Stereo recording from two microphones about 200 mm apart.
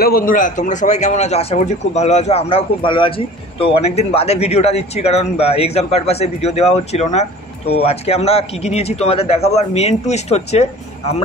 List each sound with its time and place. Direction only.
0.0 s a man's voice: 45° left (ahead or behind)